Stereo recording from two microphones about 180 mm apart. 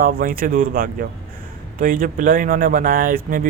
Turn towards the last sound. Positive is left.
turn(degrees=-50)  # may be behind; listen again after turning